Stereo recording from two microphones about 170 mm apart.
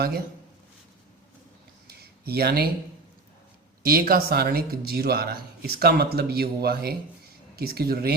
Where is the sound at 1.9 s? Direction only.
70° right (ahead or behind).